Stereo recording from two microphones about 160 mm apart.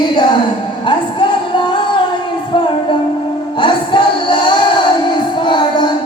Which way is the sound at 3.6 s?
30° left (ahead or behind).